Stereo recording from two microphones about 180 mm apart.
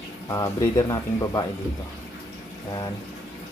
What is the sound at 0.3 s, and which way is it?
Speech, 20° left (ahead or behind).